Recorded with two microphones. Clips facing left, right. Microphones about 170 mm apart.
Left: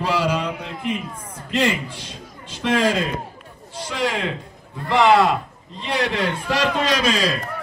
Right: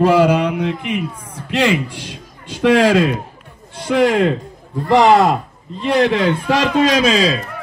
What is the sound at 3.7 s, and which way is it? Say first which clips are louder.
Speech: right 10 dB; 55° right (ahead or behind).